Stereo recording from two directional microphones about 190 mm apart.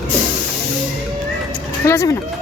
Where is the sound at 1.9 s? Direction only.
15° left (ahead or behind).